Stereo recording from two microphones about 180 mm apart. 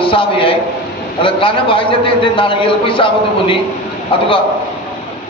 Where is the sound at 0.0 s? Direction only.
30° left (ahead or behind).